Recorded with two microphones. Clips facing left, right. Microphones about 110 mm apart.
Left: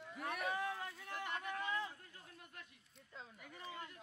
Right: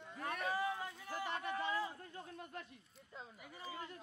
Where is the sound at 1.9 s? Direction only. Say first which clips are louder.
Right 9 dB; 30° right (ahead or behind).